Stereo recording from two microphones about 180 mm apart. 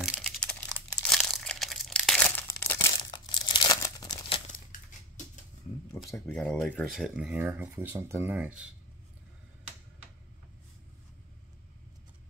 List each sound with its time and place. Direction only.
0.0 s crumpling: centre (ahead or behind)
2.7 s crumpling: 20° left (ahead or behind)
6.0 s speech: 15° left (ahead or behind)
6.3 s speech: 5° left (ahead or behind)